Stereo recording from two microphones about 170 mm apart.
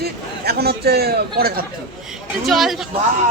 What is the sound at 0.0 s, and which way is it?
A man's voice, 70° right (ahead or behind).